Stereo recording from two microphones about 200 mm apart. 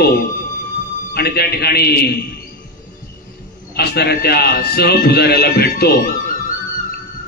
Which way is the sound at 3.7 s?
50° left (ahead or behind).